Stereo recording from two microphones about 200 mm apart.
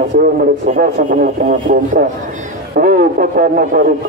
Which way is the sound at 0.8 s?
45° right (ahead or behind).